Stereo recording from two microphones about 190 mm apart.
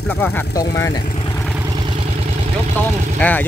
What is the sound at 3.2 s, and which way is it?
Speech, 10° left (ahead or behind).